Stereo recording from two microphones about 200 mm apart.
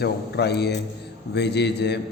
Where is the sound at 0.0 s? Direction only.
55° left (ahead or behind).